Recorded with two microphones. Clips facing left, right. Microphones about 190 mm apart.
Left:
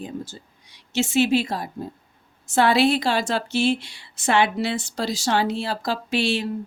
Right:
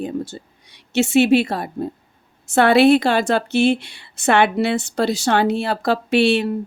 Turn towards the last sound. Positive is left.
turn(degrees=-65)  # may be behind; listen again after turning